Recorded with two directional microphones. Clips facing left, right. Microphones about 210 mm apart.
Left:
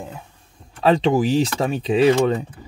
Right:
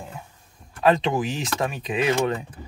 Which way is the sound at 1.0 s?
35° left (ahead or behind).